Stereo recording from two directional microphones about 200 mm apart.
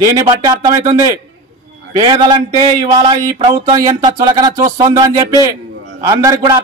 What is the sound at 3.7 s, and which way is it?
Speech, 20° right (ahead or behind).